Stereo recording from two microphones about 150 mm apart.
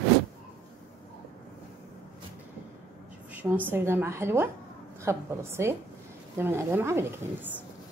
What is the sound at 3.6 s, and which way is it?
A woman's voice, 15° right (ahead or behind).